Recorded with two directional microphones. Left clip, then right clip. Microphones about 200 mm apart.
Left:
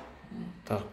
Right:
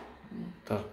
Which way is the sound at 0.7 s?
Centre (ahead or behind).